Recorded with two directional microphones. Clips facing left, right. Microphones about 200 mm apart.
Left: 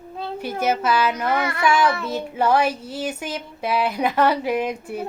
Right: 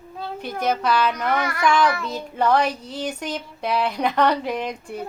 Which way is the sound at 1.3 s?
25° left (ahead or behind).